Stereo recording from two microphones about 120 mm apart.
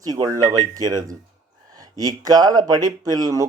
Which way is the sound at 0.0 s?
30° right (ahead or behind).